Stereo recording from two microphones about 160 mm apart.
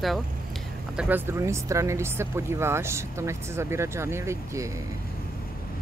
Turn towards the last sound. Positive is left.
turn(degrees=-20)  # may be behind; listen again after turning